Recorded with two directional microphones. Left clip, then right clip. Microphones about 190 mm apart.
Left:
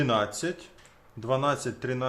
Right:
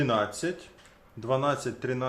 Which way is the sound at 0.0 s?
5° left (ahead or behind).